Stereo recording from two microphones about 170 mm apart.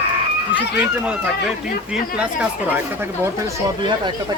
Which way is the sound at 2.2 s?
5° right (ahead or behind).